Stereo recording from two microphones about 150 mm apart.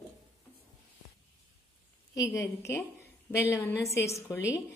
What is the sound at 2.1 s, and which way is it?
A woman's voice, 20° left (ahead or behind).